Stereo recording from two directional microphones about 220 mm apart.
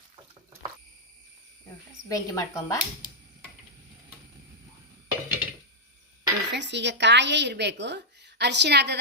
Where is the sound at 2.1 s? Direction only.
15° left (ahead or behind).